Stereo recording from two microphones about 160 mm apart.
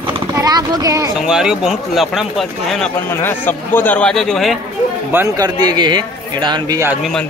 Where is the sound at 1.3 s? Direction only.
5° right (ahead or behind).